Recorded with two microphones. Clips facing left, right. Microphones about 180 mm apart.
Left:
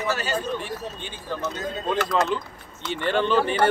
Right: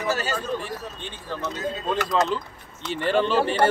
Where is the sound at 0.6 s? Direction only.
Centre (ahead or behind).